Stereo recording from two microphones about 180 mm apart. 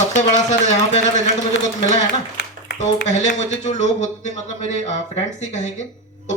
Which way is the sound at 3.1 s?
40° left (ahead or behind).